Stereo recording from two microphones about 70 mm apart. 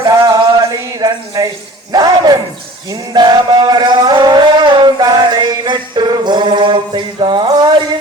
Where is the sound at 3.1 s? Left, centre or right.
Right.